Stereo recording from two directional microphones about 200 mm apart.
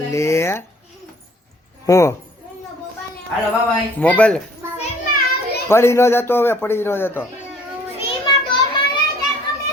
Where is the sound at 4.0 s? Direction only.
5° left (ahead or behind).